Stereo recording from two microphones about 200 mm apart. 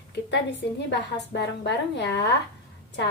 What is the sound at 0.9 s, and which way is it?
A woman's voice, 60° left (ahead or behind).